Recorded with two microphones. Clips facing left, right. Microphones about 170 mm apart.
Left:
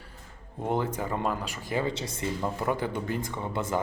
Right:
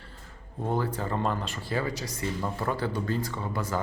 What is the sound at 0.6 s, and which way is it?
A man's voice, 20° left (ahead or behind).